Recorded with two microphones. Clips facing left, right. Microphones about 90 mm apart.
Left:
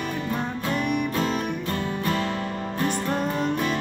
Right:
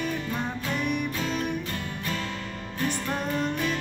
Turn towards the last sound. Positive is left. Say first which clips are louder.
# left 3 dB
turn(degrees=35)  # may be behind; listen again after turning